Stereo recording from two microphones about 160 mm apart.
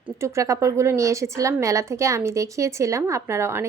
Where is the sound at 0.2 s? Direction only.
20° right (ahead or behind).